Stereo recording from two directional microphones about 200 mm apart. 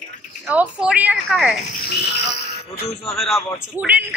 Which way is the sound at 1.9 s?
55° left (ahead or behind).